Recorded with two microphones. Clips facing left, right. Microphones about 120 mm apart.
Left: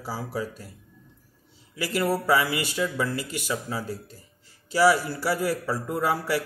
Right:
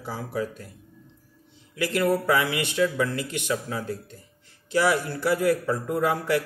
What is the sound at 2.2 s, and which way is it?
Speech, 5° left (ahead or behind).